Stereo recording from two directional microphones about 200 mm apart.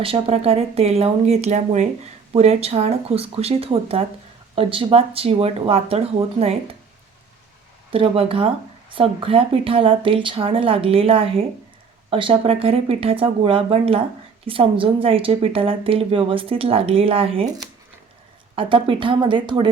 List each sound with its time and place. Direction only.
0.0 s a woman's voice: 30° right (ahead or behind)
7.9 s a woman's voice: 30° right (ahead or behind)
18.5 s a woman's voice: 25° right (ahead or behind)